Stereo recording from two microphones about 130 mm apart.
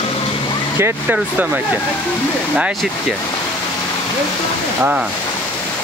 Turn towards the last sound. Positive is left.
turn(degrees=-10)  # may be behind; listen again after turning